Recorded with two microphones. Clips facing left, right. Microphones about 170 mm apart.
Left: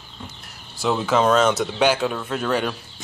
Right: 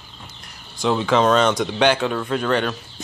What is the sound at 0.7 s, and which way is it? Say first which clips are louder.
Speech: right 2 dB; 5° left (ahead or behind).